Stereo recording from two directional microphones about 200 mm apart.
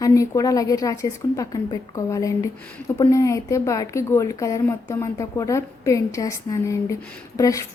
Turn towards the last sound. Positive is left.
turn(degrees=15)  # may be behind; listen again after turning